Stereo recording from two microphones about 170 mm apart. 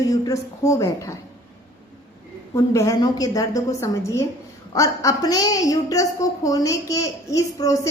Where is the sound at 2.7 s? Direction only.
20° left (ahead or behind).